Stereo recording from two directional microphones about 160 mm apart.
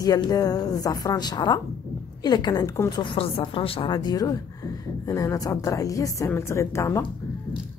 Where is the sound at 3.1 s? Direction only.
35° left (ahead or behind); by 7.0 s 15° left (ahead or behind).